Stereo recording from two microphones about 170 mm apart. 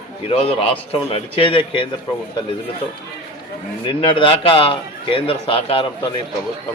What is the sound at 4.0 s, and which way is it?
A man's voice, 30° left (ahead or behind).